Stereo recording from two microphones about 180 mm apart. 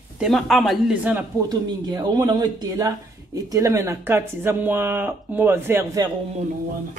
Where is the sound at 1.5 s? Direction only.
20° right (ahead or behind).